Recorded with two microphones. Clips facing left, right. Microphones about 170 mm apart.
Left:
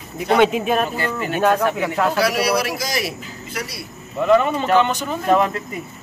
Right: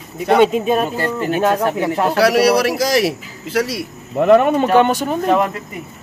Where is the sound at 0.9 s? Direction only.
40° right (ahead or behind).